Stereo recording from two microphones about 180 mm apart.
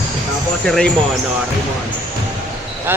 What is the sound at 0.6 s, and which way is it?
Speech, 5° left (ahead or behind).